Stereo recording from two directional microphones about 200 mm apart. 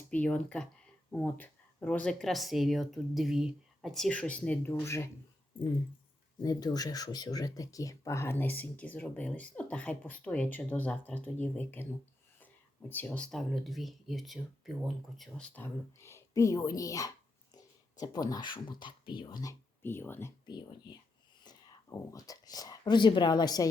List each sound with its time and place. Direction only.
0.1 s speech: 5° left (ahead or behind)
6.4 s speech: 20° left (ahead or behind)
12.9 s speech: 5° left (ahead or behind)
21.4 s speech: 15° left (ahead or behind)